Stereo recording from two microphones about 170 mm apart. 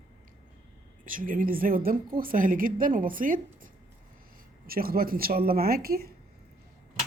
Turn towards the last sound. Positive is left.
turn(degrees=-60)  # may be behind; listen again after turning